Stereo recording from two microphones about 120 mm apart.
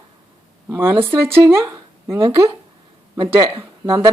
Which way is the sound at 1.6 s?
30° right (ahead or behind).